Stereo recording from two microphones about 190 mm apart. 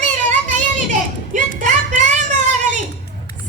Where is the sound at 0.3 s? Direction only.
40° right (ahead or behind).